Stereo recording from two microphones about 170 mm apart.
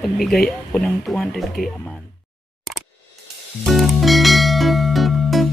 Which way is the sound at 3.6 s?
Centre (ahead or behind).